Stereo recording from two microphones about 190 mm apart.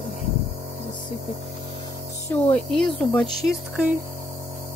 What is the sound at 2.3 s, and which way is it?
Speech, 5° left (ahead or behind).